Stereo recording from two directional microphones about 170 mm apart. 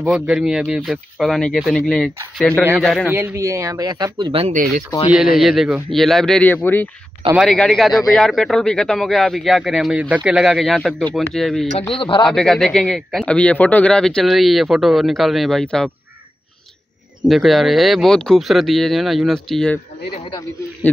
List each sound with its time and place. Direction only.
0.0 s a man's voice: 5° right (ahead or behind)
3.1 s speech: 15° right (ahead or behind); by 4.6 s 35° right (ahead or behind)
5.4 s a man's voice: centre (ahead or behind)
11.9 s a man's voice: 30° left (ahead or behind)
12.3 s a man's voice: 5° left (ahead or behind)
17.3 s a man's voice: centre (ahead or behind)